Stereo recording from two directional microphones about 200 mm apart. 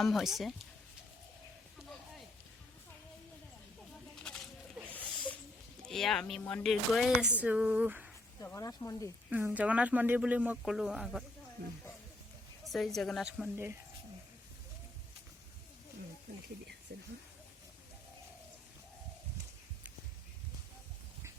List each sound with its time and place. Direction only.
0.0 s speech: centre (ahead or behind)
4.1 s a sound: 5° left (ahead or behind)
5.8 s speech: centre (ahead or behind)
8.4 s speech: 15° left (ahead or behind)
9.3 s speech: 10° right (ahead or behind)
12.6 s speech: centre (ahead or behind)
16.9 s speech: 55° right (ahead or behind)